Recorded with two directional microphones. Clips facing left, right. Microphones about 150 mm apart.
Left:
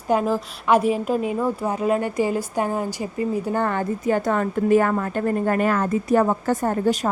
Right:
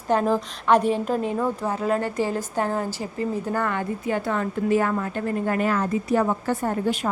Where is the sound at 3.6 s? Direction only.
35° left (ahead or behind).